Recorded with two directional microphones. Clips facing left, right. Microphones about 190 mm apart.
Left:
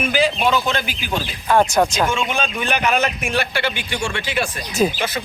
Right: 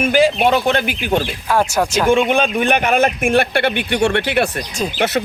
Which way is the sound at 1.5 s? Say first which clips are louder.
Left 2 dB; 5° right (ahead or behind).